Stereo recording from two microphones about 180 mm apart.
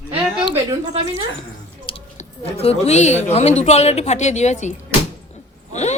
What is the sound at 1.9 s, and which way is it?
Speech, 35° left (ahead or behind).